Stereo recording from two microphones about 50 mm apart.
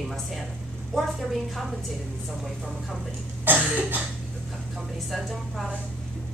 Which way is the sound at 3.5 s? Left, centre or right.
Right.